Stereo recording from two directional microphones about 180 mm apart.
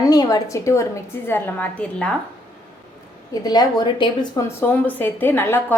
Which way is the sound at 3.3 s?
20° left (ahead or behind).